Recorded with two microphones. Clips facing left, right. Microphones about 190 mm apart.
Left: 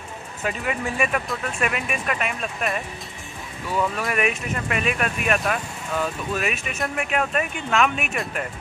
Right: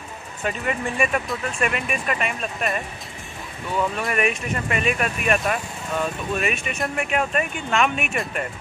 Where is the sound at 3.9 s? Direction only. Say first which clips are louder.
Right 1 dB; centre (ahead or behind).